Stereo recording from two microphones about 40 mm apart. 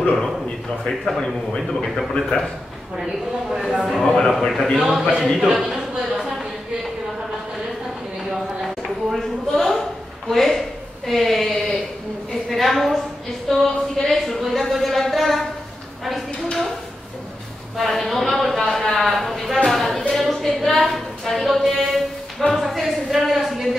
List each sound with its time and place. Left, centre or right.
0.8 s a man's voice: centre
1.2 s a man's voice: left
2.2 s a man's voice: centre
3.0 s speech: centre
4.1 s a man's voice: centre
5.4 s a sound: centre
8.3 s a sound: centre
17.7 s speech: centre
19.6 s a sound: centre